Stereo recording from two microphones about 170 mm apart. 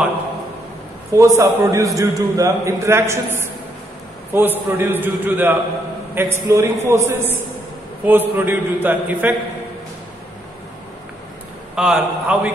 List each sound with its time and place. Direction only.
1.1 s a man's voice: 20° right (ahead or behind)
11.7 s a man's voice: 5° right (ahead or behind)